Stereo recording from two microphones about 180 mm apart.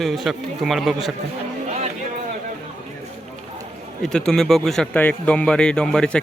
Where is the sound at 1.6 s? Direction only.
40° right (ahead or behind).